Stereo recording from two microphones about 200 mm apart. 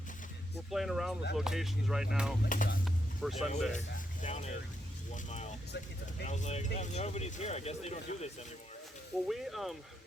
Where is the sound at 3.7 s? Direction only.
35° left (ahead or behind).